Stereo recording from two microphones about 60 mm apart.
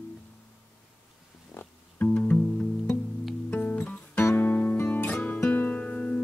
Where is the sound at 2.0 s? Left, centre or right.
Left.